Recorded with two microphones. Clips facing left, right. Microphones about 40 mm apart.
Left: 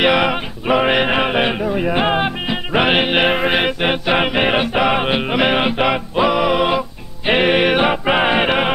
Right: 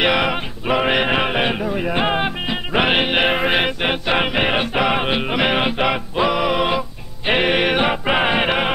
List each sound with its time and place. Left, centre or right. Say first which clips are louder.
0.0 s male singing: left 3 dB; centre
7.2 s music: left 3 dB; centre